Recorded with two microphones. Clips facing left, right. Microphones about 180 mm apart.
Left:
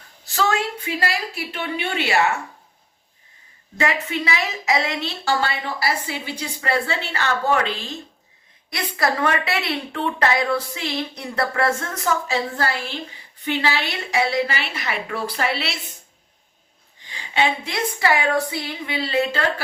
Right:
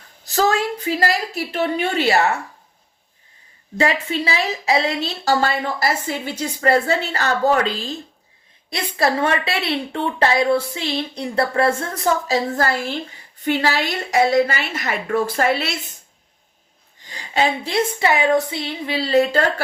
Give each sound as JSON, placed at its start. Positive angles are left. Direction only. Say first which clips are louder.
{"t": 0.3, "sound": "a woman's voice", "louder": "right 4 dB", "side_deg": -40}
{"t": 3.8, "sound": "a woman's voice", "louder": "right 3 dB", "side_deg": -30}
{"t": 17.1, "sound": "a woman's voice", "louder": "right 2 dB", "side_deg": -40}
{"t": 18.0, "sound": "a woman's voice", "louder": "right 1 dB", "side_deg": -20}